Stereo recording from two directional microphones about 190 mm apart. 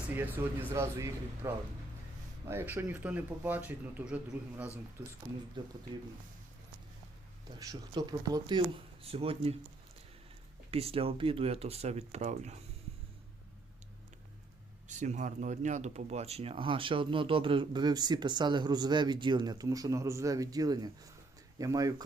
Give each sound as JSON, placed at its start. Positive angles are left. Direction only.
{"t": 0.1, "sound": "speech", "side_deg": -10}
{"t": 5.6, "sound": "speech", "side_deg": -25}
{"t": 7.6, "sound": "speech", "side_deg": -20}
{"t": 10.7, "sound": "speech", "side_deg": -30}
{"t": 14.8, "sound": "speech", "side_deg": -40}